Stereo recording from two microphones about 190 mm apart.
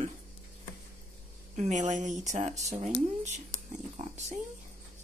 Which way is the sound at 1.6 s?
40° right (ahead or behind).